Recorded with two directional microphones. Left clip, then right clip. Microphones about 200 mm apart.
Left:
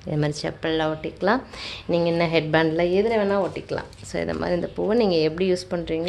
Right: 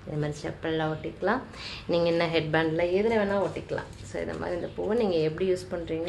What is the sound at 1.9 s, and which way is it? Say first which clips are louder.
A woman's voice: left 3 dB; 25° left (ahead or behind).